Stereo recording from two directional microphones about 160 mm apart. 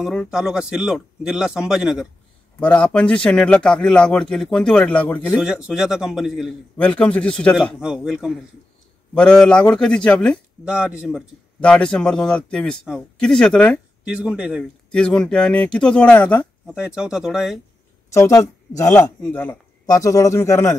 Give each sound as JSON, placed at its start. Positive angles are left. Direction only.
{"t": 0.0, "sound": "a man's voice", "side_deg": 0}
{"t": 2.6, "sound": "a man's voice", "side_deg": 5}
{"t": 5.3, "sound": "a man's voice", "side_deg": -5}
{"t": 7.8, "sound": "a man's voice", "side_deg": -5}
{"t": 10.6, "sound": "a man's voice", "side_deg": -5}
{"t": 14.1, "sound": "a man's voice", "side_deg": -5}
{"t": 14.9, "sound": "a man's voice", "side_deg": 5}
{"t": 16.8, "sound": "a man's voice", "side_deg": -5}
{"t": 18.1, "sound": "a man's voice", "side_deg": 20}